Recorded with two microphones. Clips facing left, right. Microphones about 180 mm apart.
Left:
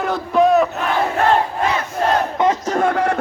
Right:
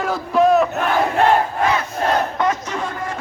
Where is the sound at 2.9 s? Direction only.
70° left (ahead or behind).